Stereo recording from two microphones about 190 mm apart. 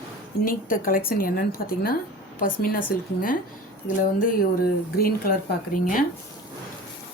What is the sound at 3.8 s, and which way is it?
A woman's voice, 45° left (ahead or behind).